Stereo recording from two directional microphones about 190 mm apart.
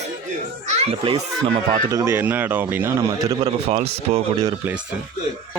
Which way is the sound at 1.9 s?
15° right (ahead or behind).